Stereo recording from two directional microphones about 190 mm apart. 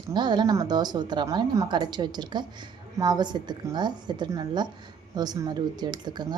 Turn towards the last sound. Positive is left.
turn(degrees=-20)  # may be behind; listen again after turning